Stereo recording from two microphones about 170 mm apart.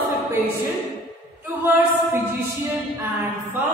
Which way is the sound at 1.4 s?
15° right (ahead or behind).